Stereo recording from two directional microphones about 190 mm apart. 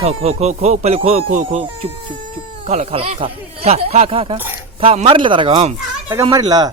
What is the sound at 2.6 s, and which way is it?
Speech, 35° right (ahead or behind).